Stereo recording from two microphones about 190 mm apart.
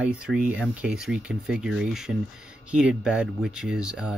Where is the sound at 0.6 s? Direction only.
5° right (ahead or behind).